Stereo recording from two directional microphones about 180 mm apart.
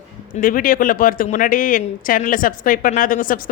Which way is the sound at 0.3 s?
50° left (ahead or behind).